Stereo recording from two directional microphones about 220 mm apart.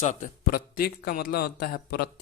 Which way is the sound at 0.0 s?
35° left (ahead or behind).